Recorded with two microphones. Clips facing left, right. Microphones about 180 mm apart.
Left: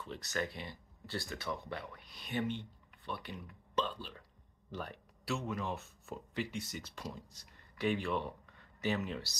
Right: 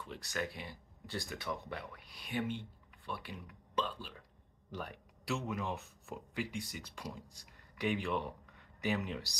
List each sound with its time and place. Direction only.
0.0 s speech: 10° right (ahead or behind)